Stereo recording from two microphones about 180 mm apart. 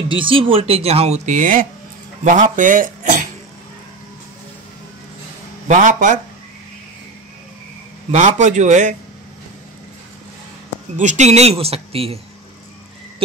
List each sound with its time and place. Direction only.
0.1 s speech: 30° right (ahead or behind); by 3.2 s 50° right (ahead or behind)
5.7 s a man's voice: 45° right (ahead or behind)
8.1 s a man's voice: 40° right (ahead or behind)
11.0 s speech: 40° right (ahead or behind)